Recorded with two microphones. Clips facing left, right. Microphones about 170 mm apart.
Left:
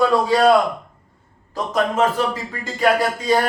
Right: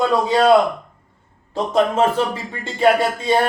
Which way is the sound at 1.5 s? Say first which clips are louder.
Right 3 dB; 30° right (ahead or behind).